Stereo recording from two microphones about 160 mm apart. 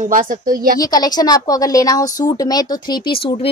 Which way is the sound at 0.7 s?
25° left (ahead or behind).